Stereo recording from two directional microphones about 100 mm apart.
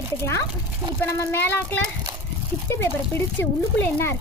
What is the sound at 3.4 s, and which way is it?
Speech, 20° left (ahead or behind).